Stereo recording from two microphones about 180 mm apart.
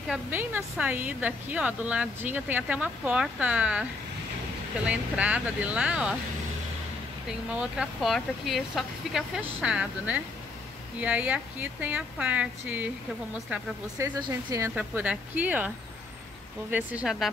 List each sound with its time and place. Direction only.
0.1 s a woman's voice: 10° right (ahead or behind)
4.8 s a woman's voice: 5° right (ahead or behind)
7.5 s a woman's voice: 5° right (ahead or behind)
16.7 s speech: 5° right (ahead or behind)